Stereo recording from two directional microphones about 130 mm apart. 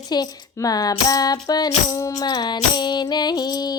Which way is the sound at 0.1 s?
30° left (ahead or behind).